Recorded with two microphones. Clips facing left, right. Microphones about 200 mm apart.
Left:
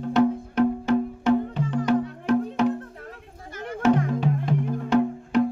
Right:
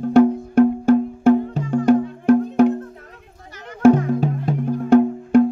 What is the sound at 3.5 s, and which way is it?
Music, 50° left (ahead or behind).